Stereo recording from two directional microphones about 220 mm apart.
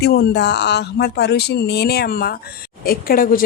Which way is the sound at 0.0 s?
45° left (ahead or behind).